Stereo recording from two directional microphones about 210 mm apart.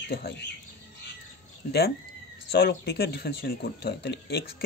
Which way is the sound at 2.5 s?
50° left (ahead or behind).